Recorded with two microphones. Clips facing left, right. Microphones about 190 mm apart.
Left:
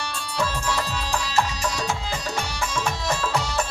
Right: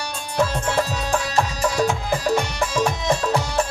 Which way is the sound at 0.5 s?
50° right (ahead or behind).